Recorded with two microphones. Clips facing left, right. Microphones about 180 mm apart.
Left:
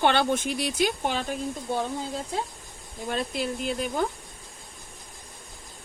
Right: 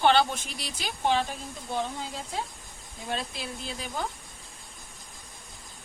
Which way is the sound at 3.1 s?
55° left (ahead or behind).